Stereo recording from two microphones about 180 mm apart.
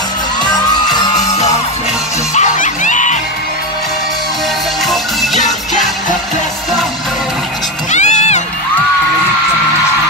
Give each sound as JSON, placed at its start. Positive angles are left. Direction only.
{"t": 2.3, "sound": "music", "side_deg": 45}
{"t": 4.8, "sound": "music", "side_deg": 0}
{"t": 7.9, "sound": "crowd", "side_deg": 40}